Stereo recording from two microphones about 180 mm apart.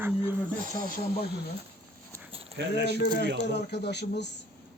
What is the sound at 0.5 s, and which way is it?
Speech, 50° right (ahead or behind).